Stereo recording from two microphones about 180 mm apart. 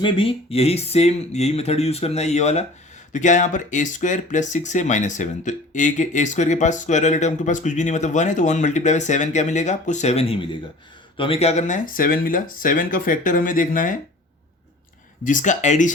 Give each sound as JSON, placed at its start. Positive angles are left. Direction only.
{"t": 0.0, "sound": "speech", "side_deg": 30}
{"t": 15.2, "sound": "speech", "side_deg": 45}